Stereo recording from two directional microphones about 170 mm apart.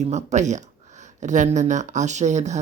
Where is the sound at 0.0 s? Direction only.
40° right (ahead or behind).